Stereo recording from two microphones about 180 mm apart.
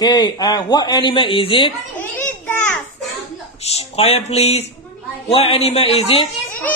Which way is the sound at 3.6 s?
35° left (ahead or behind).